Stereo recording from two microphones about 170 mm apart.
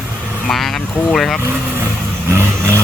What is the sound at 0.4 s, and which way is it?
Speech, centre (ahead or behind).